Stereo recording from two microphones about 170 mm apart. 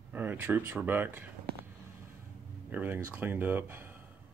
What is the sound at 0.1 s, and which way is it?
Speech, 10° right (ahead or behind).